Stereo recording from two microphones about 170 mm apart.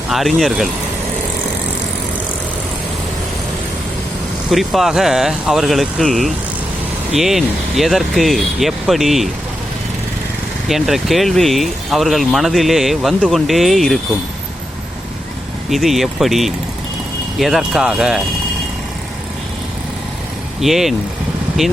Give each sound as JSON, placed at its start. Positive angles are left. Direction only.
{"t": 0.1, "sound": "speech", "side_deg": 0}
{"t": 4.5, "sound": "speech", "side_deg": 0}
{"t": 10.7, "sound": "speech", "side_deg": 0}
{"t": 15.7, "sound": "speech", "side_deg": 0}
{"t": 20.6, "sound": "speech", "side_deg": 0}